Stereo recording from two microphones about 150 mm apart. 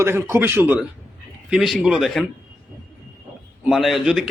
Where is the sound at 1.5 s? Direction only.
Centre (ahead or behind).